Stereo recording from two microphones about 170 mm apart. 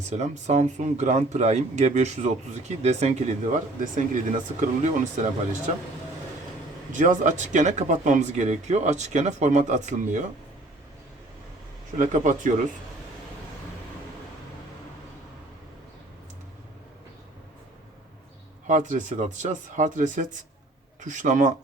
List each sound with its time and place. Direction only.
0.1 s speech: 40° right (ahead or behind)
6.9 s speech: 45° right (ahead or behind)
11.9 s speech: 50° right (ahead or behind)
18.7 s speech: 45° right (ahead or behind)